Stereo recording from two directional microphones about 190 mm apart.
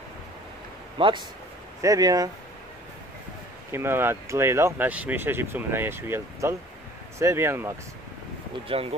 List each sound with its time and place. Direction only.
0.9 s speech: 25° right (ahead or behind)
3.7 s speech: 10° right (ahead or behind)